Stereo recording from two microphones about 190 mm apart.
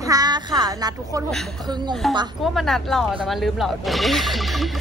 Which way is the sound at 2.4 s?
Centre (ahead or behind).